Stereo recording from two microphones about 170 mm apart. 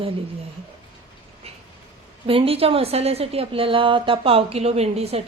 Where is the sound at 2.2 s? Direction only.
35° right (ahead or behind).